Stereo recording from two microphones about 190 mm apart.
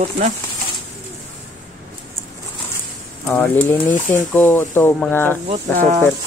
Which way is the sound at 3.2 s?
5° left (ahead or behind).